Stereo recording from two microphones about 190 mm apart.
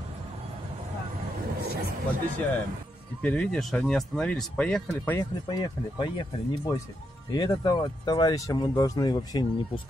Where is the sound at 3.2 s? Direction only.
5° left (ahead or behind).